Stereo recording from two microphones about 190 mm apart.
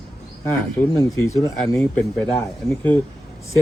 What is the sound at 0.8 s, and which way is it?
Speech, 15° left (ahead or behind).